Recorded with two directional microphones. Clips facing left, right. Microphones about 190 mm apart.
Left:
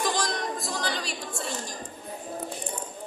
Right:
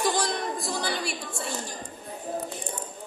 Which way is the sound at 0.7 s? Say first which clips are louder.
Right 1 dB; 10° right (ahead or behind).